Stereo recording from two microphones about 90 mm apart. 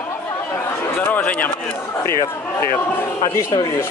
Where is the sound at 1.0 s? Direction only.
15° left (ahead or behind).